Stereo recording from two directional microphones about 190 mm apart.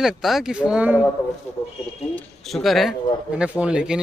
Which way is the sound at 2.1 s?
Centre (ahead or behind).